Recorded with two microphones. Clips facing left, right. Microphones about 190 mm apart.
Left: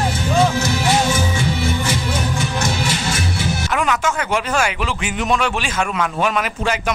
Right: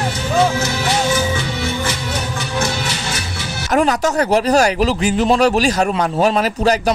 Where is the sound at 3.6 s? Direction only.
40° right (ahead or behind).